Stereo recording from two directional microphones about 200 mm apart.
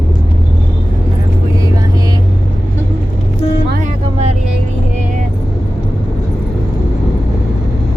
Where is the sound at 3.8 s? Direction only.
35° right (ahead or behind).